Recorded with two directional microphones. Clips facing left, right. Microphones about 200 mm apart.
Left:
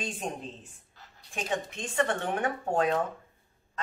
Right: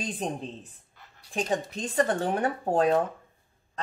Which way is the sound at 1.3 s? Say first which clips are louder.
Right 4 dB; 35° right (ahead or behind).